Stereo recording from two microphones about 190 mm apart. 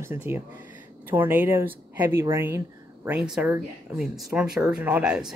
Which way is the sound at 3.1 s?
5° right (ahead or behind).